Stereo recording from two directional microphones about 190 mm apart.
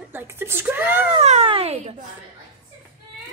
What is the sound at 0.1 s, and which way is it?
Speech, 10° right (ahead or behind).